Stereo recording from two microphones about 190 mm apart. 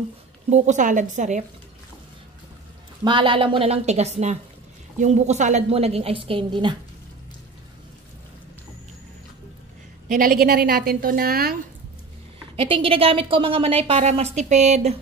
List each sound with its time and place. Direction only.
0.5 s a woman's voice: 40° right (ahead or behind)
3.0 s a woman's voice: 25° right (ahead or behind)
10.0 s a woman's voice: 45° right (ahead or behind)
12.5 s a woman's voice: 25° right (ahead or behind)